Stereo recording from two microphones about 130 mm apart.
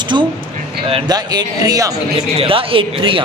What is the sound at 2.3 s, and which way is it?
Speech, 45° right (ahead or behind).